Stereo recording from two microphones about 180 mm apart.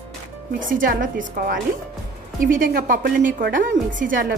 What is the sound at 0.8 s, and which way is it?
Speech, 50° right (ahead or behind).